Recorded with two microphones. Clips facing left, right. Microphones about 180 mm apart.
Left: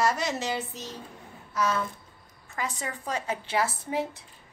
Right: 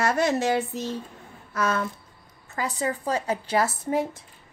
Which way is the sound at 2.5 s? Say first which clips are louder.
Right 6 dB; 35° right (ahead or behind).